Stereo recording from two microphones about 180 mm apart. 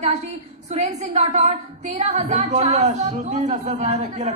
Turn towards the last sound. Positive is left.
turn(degrees=-40)  # may be behind; listen again after turning